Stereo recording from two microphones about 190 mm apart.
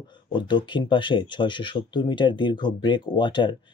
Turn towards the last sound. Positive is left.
turn(degrees=25)  # may be behind; listen again after turning